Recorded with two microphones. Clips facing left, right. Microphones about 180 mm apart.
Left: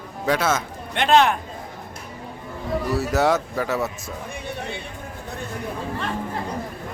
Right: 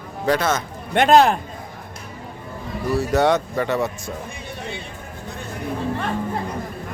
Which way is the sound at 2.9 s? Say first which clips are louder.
Right 3 dB; 5° left (ahead or behind).